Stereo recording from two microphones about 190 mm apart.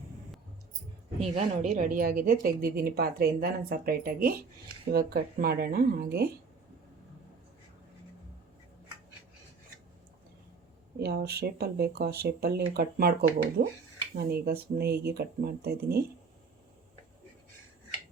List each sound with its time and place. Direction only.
1.4 s a woman's voice: 40° right (ahead or behind)
11.0 s speech: 55° right (ahead or behind)